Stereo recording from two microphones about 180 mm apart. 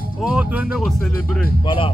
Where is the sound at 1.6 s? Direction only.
30° left (ahead or behind).